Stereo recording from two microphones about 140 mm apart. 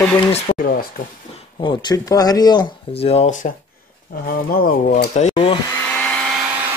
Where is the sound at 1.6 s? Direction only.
30° left (ahead or behind).